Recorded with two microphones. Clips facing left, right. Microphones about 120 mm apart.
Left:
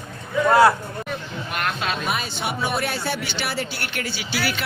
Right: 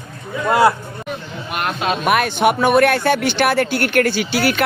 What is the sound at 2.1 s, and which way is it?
Speech, 65° right (ahead or behind).